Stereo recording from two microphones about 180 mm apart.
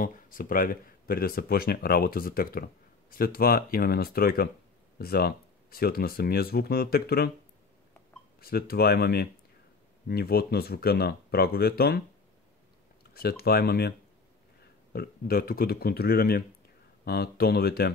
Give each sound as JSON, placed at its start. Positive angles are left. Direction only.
{"t": 0.0, "sound": "speech", "side_deg": 50}
{"t": 8.4, "sound": "speech", "side_deg": 60}
{"t": 13.1, "sound": "speech", "side_deg": 60}